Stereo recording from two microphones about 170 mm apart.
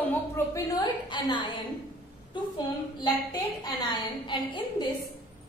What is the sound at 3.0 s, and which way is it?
A woman's voice, 25° left (ahead or behind).